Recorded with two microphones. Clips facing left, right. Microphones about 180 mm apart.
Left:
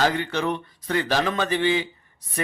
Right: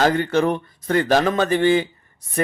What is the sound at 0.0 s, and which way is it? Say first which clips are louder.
Speech: right 5 dB; 45° right (ahead or behind).